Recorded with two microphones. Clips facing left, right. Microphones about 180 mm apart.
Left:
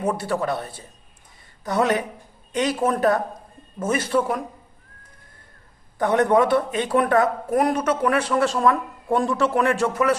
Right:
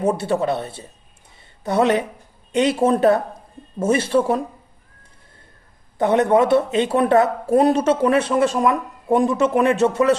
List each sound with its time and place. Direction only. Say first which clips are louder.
0.0 s speech: right 4 dB; 25° right (ahead or behind)
6.0 s speech: right 2 dB; 25° right (ahead or behind)